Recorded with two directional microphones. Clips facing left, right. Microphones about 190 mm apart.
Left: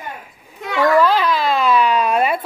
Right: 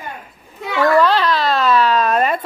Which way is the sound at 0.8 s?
10° left (ahead or behind).